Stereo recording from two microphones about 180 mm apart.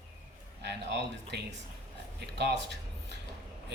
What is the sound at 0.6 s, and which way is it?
Speech, 70° right (ahead or behind).